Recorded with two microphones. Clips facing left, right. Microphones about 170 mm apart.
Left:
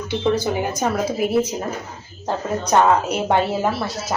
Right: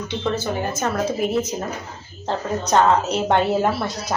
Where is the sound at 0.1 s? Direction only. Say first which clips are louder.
Left 5 dB; 10° left (ahead or behind).